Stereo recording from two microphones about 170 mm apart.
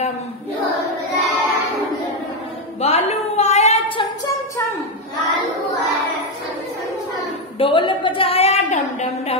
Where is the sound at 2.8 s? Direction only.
40° left (ahead or behind).